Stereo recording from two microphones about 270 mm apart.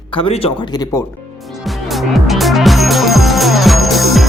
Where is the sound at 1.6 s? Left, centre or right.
Centre.